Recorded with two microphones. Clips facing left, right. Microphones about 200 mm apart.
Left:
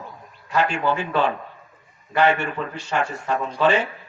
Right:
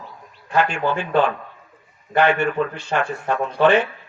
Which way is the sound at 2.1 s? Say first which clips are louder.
Right 2 dB; 55° right (ahead or behind).